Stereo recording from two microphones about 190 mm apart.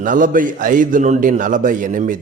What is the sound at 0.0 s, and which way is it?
A man's voice, 45° right (ahead or behind).